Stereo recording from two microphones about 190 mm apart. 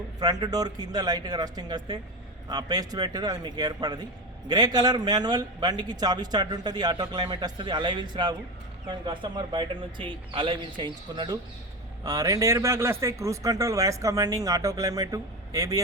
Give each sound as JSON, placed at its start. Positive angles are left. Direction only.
{"t": 0.2, "sound": "a man's voice", "side_deg": -20}